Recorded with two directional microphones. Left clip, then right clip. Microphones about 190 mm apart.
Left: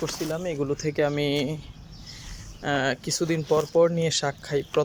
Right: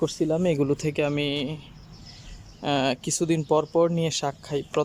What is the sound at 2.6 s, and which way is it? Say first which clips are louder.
Speech: right 1 dB; 15° right (ahead or behind).